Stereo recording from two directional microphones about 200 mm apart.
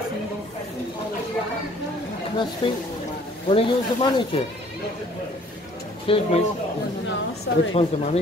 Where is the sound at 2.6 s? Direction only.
25° left (ahead or behind).